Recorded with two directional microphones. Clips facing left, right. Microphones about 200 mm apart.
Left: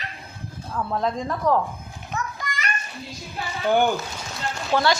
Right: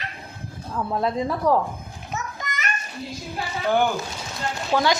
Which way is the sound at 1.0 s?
5° right (ahead or behind).